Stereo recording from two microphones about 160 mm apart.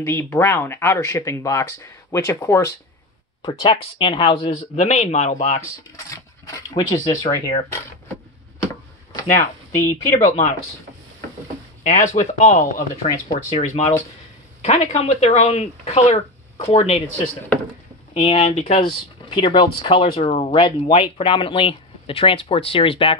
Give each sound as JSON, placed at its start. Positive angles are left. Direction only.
{"t": 0.0, "sound": "speech", "side_deg": 15}
{"t": 3.4, "sound": "speech", "side_deg": 30}
{"t": 6.0, "sound": "a sound", "side_deg": 20}
{"t": 9.1, "sound": "speech", "side_deg": 20}
{"t": 10.1, "sound": "speech", "side_deg": 45}
{"t": 11.8, "sound": "speech", "side_deg": 45}
{"t": 13.0, "sound": "speech", "side_deg": 40}
{"t": 18.1, "sound": "speech", "side_deg": 40}